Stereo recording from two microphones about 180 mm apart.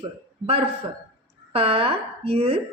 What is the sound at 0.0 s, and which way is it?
Speech, 35° right (ahead or behind).